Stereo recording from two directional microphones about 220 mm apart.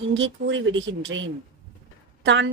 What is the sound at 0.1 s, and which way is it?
A woman's voice, 60° right (ahead or behind).